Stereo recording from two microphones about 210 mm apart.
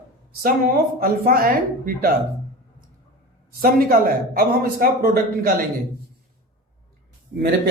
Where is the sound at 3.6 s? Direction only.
45° right (ahead or behind).